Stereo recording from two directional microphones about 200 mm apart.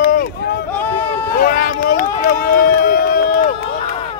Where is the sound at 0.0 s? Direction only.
45° left (ahead or behind).